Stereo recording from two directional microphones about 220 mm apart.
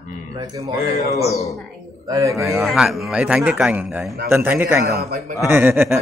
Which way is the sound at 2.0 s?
15° right (ahead or behind).